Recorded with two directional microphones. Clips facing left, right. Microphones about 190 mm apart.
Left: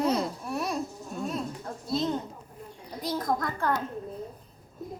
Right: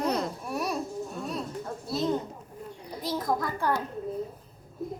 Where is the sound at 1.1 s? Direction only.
Centre (ahead or behind).